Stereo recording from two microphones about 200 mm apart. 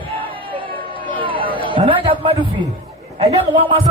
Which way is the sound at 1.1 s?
25° right (ahead or behind).